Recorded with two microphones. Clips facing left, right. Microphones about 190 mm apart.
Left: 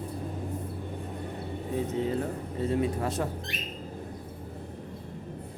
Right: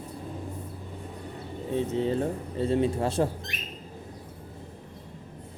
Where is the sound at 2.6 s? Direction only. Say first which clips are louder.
Right 3 dB; 30° right (ahead or behind).